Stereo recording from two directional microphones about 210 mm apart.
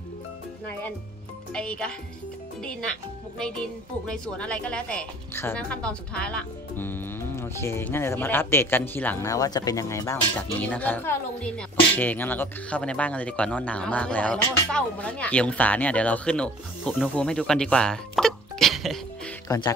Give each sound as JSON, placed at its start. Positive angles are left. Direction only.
{"t": 1.5, "sound": "speech", "side_deg": 5}
{"t": 19.4, "sound": "speech", "side_deg": 15}